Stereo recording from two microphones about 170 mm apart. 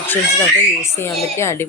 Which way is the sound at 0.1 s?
15° left (ahead or behind).